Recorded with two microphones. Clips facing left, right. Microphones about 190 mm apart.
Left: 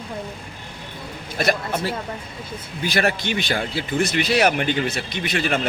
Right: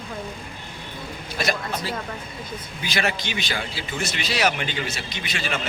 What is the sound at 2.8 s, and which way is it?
Speech, 55° left (ahead or behind).